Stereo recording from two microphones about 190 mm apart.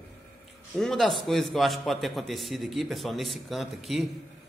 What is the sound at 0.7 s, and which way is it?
A man's voice, centre (ahead or behind).